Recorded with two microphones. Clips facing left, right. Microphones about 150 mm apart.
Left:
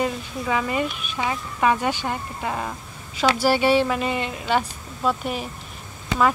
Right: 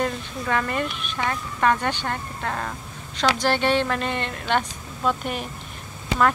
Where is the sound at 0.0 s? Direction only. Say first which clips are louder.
Left 1 dB; 5° left (ahead or behind).